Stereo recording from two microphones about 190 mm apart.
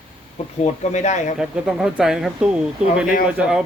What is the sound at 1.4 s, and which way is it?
Speech, 5° right (ahead or behind).